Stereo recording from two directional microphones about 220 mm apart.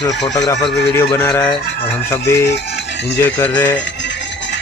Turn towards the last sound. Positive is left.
turn(degrees=10)  # may be behind; listen again after turning